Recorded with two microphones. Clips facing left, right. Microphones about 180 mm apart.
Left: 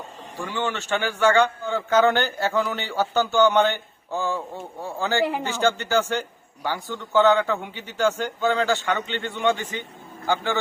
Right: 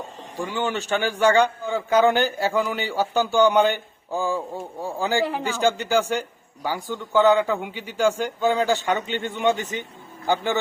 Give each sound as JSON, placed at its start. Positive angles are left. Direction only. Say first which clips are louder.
{"t": 0.3, "sound": "a man's voice", "louder": "right 2 dB", "side_deg": -15}